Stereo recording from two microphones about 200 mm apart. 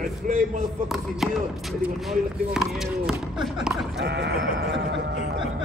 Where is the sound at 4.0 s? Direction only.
55° right (ahead or behind).